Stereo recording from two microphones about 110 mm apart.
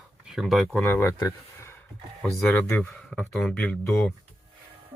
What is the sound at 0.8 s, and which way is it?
Speech, 20° left (ahead or behind).